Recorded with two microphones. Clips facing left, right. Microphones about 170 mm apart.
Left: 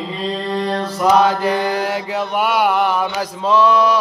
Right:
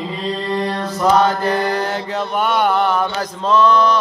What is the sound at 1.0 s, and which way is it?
Mantra, 10° left (ahead or behind).